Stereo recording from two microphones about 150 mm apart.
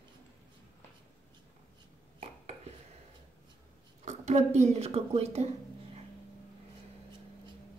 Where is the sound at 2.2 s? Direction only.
45° right (ahead or behind).